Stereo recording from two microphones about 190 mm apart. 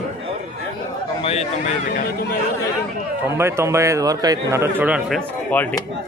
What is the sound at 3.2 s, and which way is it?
A man's voice, 15° right (ahead or behind).